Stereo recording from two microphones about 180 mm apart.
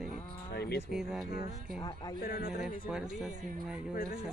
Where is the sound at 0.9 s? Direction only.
Centre (ahead or behind).